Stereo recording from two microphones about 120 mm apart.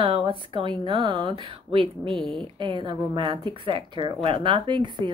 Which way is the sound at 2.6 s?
40° right (ahead or behind).